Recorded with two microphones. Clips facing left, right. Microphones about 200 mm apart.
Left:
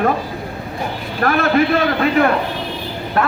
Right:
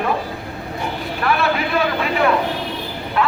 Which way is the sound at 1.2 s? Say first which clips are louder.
Left 5 dB; 45° left (ahead or behind).